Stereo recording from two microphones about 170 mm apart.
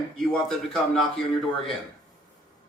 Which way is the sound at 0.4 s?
5° left (ahead or behind).